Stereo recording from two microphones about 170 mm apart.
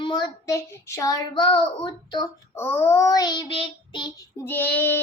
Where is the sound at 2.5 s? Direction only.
15° left (ahead or behind); by 4.1 s 30° left (ahead or behind).